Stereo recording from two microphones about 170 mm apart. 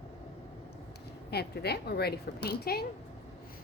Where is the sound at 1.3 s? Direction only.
70° left (ahead or behind).